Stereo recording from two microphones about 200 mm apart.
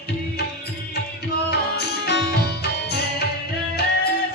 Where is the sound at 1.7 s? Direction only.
55° left (ahead or behind).